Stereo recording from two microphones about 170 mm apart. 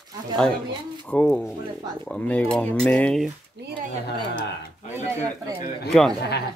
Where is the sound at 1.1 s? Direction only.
10° left (ahead or behind).